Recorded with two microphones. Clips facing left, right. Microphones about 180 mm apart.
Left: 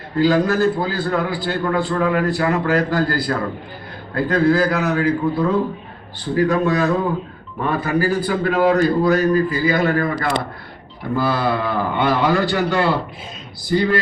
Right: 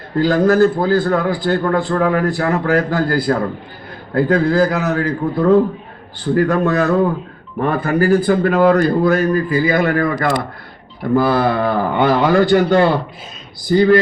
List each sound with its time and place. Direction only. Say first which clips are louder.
0.2 s a man's voice: right 4 dB; 50° right (ahead or behind)